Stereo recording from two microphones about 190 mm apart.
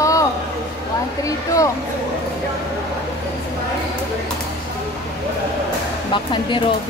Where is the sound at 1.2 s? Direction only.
15° left (ahead or behind).